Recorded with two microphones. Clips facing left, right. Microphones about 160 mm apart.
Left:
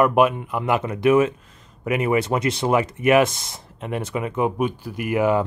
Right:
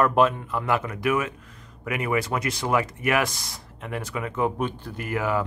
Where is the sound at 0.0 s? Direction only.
15° left (ahead or behind).